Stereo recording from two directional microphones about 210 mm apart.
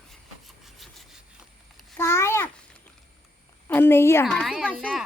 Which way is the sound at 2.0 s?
10° left (ahead or behind).